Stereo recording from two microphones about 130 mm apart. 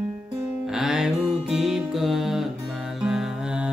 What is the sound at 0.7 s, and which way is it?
Music, 5° right (ahead or behind).